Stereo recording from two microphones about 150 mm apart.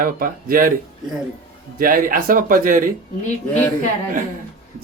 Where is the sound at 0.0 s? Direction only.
75° right (ahead or behind).